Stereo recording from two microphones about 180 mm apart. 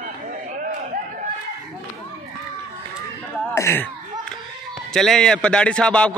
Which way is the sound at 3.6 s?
15° left (ahead or behind).